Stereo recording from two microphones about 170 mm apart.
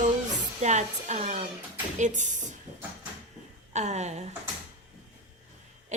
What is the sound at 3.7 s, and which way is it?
Speech, 40° right (ahead or behind).